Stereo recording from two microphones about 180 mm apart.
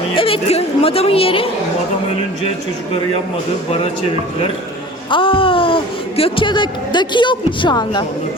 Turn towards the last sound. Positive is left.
turn(degrees=25)  # may be behind; listen again after turning